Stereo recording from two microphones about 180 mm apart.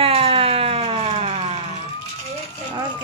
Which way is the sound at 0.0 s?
30° right (ahead or behind).